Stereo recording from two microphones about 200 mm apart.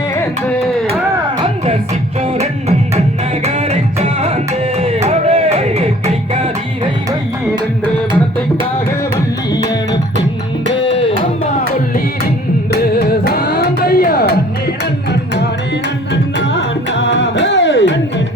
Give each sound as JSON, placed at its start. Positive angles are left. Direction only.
{"t": 2.4, "sound": "music", "side_deg": -30}
{"t": 12.7, "sound": "music", "side_deg": 50}
{"t": 16.4, "sound": "music", "side_deg": 65}